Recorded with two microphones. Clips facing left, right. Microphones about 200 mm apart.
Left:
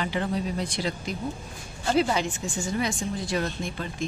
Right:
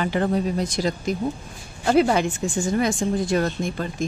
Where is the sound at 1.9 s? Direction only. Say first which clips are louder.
Right 6 dB; 55° right (ahead or behind).